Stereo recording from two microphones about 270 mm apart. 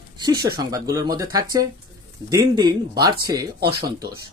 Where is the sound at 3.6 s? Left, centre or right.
Right.